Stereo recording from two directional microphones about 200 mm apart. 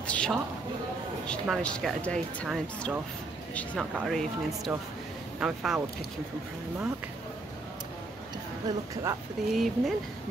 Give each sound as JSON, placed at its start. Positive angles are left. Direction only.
{"t": 0.0, "sound": "a sound", "side_deg": 5}
{"t": 1.2, "sound": "speech", "side_deg": 5}
{"t": 8.6, "sound": "speech", "side_deg": -15}
{"t": 9.5, "sound": "speech", "side_deg": 0}